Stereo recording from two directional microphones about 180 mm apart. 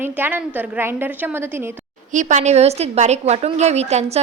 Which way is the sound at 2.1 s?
45° right (ahead or behind).